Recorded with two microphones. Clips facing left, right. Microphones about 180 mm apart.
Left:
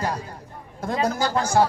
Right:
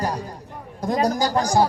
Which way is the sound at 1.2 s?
35° right (ahead or behind).